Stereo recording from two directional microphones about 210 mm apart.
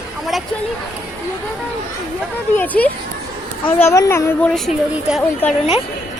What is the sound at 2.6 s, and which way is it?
A woman's voice, 5° left (ahead or behind).